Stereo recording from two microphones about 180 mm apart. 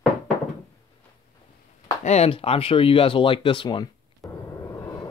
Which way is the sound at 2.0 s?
35° left (ahead or behind).